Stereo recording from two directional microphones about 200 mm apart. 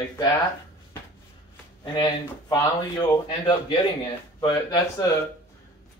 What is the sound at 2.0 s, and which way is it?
Speech, 20° left (ahead or behind).